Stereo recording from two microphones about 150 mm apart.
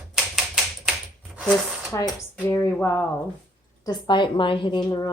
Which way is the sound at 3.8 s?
30° left (ahead or behind).